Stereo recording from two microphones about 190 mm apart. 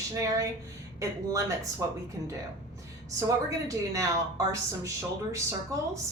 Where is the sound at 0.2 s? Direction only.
15° right (ahead or behind).